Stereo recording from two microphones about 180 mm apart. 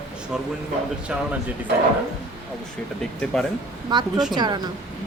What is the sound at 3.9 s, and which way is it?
Speech, 25° right (ahead or behind).